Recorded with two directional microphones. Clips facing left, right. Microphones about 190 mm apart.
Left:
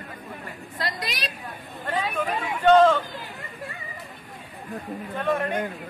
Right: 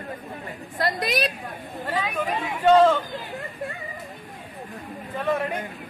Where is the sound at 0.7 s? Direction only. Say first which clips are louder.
Right 8 dB; 55° right (ahead or behind).